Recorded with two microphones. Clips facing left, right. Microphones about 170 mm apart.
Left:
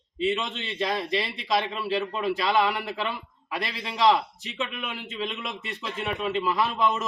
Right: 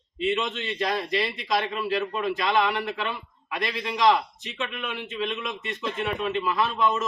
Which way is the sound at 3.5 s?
30° left (ahead or behind).